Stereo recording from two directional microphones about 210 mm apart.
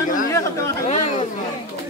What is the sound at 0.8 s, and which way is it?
Speech, 35° left (ahead or behind).